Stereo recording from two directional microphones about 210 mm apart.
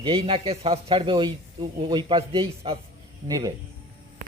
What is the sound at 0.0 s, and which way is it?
A man's voice, 25° right (ahead or behind).